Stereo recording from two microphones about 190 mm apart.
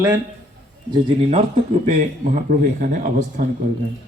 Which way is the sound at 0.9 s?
30° right (ahead or behind).